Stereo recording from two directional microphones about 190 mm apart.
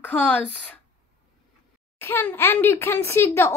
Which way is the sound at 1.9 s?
10° left (ahead or behind).